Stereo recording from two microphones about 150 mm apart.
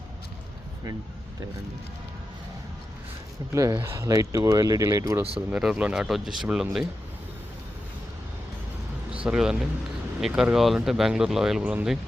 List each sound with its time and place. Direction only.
3.5 s speech: 20° right (ahead or behind)
5.5 s speech: 5° right (ahead or behind)
9.2 s speech: 5° right (ahead or behind)